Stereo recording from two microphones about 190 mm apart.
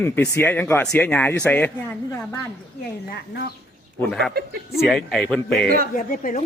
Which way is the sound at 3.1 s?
60° left (ahead or behind).